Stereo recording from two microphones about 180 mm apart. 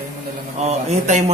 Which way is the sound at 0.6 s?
40° right (ahead or behind).